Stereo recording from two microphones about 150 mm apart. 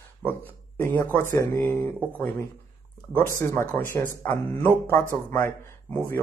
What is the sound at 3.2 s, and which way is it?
Speech, 15° left (ahead or behind).